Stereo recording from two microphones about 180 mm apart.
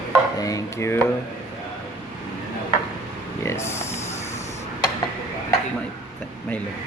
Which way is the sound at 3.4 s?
15° left (ahead or behind).